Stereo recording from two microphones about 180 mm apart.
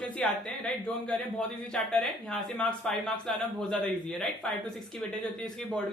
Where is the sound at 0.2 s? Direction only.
5° left (ahead or behind).